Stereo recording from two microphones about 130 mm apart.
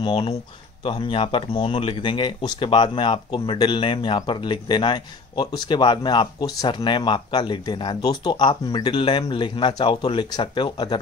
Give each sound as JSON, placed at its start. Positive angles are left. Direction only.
{"t": 0.8, "sound": "speech", "side_deg": 40}